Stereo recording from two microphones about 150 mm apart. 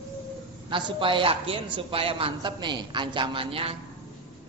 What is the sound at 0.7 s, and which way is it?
A woman's voice, 35° right (ahead or behind).